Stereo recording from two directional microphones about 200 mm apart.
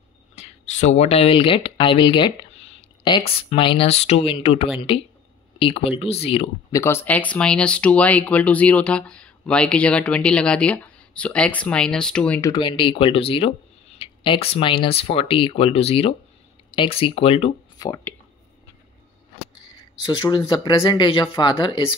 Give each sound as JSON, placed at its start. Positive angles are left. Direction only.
{"t": 0.4, "sound": "speech", "side_deg": 35}
{"t": 6.7, "sound": "speech", "side_deg": 15}
{"t": 12.4, "sound": "speech", "side_deg": 20}
{"t": 17.8, "sound": "speech", "side_deg": 15}
{"t": 20.1, "sound": "speech", "side_deg": 20}